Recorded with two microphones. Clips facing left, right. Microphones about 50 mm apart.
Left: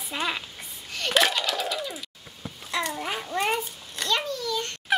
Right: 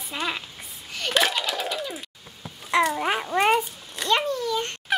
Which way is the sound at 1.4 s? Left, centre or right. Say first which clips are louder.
Even; centre.